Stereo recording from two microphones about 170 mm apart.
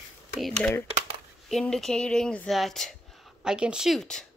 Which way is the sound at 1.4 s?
5° left (ahead or behind).